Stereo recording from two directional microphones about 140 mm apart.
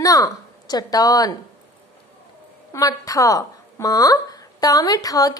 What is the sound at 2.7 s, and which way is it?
A woman's voice, 25° left (ahead or behind).